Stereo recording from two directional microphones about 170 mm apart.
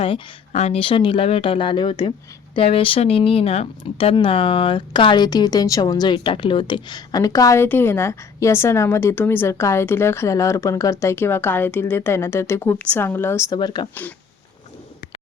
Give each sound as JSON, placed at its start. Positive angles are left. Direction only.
{"t": 0.0, "sound": "speech", "side_deg": 35}
{"t": 13.6, "sound": "speech", "side_deg": 25}